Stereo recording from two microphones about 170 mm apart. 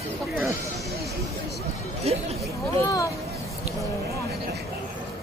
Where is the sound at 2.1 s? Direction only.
35° right (ahead or behind).